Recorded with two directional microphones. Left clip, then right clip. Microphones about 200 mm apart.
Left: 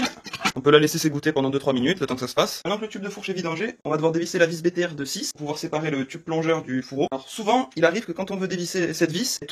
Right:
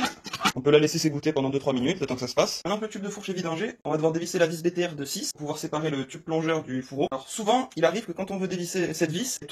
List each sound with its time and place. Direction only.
0.7 s a man's voice: 30° left (ahead or behind)
6.5 s speech: 30° left (ahead or behind)